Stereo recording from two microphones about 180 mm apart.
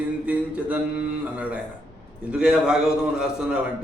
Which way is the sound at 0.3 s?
5° right (ahead or behind).